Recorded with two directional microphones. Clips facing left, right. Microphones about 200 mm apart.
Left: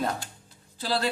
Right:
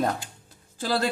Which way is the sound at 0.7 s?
45° right (ahead or behind).